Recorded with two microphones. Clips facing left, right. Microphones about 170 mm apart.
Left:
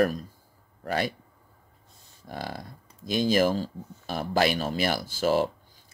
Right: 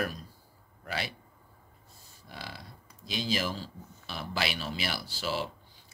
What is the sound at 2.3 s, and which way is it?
Speech, 45° left (ahead or behind).